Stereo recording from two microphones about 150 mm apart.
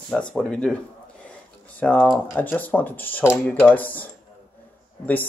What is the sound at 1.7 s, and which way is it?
Speech, 5° left (ahead or behind).